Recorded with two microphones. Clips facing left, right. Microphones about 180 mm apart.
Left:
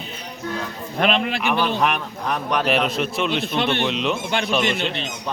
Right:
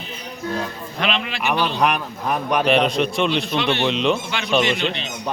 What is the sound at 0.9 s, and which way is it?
Speech, 45° left (ahead or behind).